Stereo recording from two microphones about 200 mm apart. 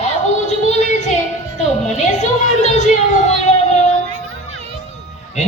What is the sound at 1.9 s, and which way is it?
Speech, 35° left (ahead or behind).